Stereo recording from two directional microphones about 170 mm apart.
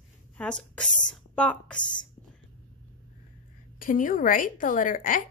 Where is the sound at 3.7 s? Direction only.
50° left (ahead or behind).